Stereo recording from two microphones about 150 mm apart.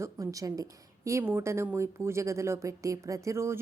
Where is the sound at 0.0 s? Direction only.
20° right (ahead or behind).